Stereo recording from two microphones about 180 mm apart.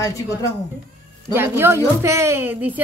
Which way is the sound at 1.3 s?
10° right (ahead or behind).